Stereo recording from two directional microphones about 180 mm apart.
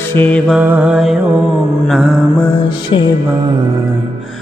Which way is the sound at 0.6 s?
10° right (ahead or behind).